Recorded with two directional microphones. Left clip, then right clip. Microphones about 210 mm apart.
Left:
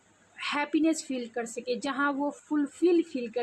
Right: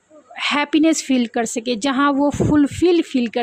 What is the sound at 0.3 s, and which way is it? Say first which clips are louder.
A woman's voice: right 11 dB; 45° right (ahead or behind).